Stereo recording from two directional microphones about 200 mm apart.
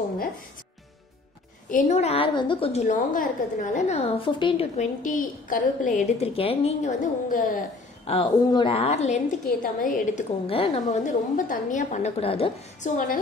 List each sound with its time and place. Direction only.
1.7 s a woman's voice: 40° left (ahead or behind)
8.1 s a woman's voice: 25° left (ahead or behind)
9.6 s a woman's voice: 40° left (ahead or behind)
10.4 s a woman's voice: 30° left (ahead or behind)